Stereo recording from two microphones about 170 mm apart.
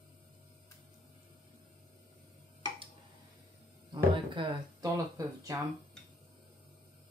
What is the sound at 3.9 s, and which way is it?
Speech, 30° right (ahead or behind).